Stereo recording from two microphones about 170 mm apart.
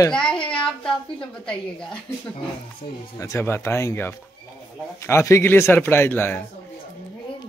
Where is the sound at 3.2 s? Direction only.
15° left (ahead or behind).